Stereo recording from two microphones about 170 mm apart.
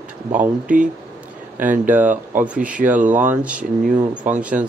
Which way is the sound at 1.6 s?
10° right (ahead or behind).